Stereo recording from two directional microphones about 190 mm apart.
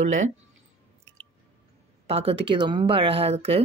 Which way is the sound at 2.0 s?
30° right (ahead or behind).